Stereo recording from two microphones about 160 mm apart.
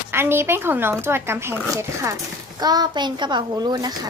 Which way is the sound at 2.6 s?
25° right (ahead or behind).